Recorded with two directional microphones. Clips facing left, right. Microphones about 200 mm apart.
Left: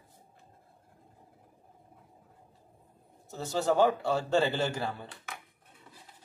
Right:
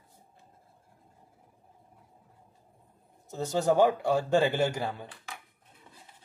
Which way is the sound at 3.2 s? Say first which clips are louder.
Right 3 dB; 20° right (ahead or behind).